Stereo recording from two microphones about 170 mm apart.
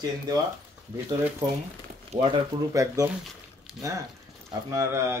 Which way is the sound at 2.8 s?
15° right (ahead or behind).